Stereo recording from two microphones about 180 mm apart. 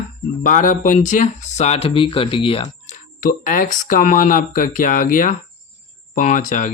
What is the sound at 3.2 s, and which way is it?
Speech, 50° left (ahead or behind).